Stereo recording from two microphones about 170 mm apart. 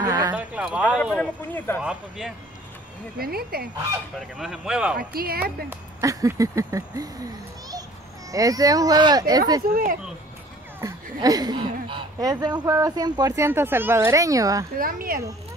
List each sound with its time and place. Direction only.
0.0 s speech: 20° right (ahead or behind)
0.4 s speech: 5° right (ahead or behind)
1.1 s speech: 10° left (ahead or behind)
1.8 s speech: 5° right (ahead or behind)
3.2 s speech: 65° right (ahead or behind)
4.4 s speech: 5° right (ahead or behind)
4.9 s speech: 60° right (ahead or behind)
5.7 s speech: 20° right (ahead or behind)
8.3 s speech: 20° right (ahead or behind)
9.7 s speech: 60° right (ahead or behind)
10.8 s speech: 20° right (ahead or behind)
14.8 s speech: 55° right (ahead or behind)